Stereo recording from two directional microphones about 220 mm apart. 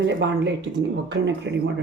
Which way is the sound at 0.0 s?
55° right (ahead or behind).